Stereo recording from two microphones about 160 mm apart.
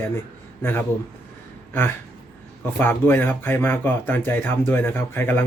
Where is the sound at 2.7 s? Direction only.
15° left (ahead or behind).